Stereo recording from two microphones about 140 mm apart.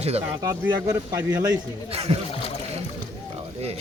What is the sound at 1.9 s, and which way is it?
Speech, 45° right (ahead or behind).